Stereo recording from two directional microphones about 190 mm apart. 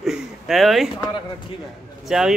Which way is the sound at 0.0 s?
Centre (ahead or behind).